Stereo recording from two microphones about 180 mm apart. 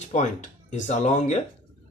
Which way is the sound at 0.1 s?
40° left (ahead or behind).